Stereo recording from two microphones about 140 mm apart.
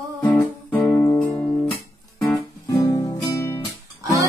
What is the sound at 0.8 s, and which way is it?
Music, 20° left (ahead or behind).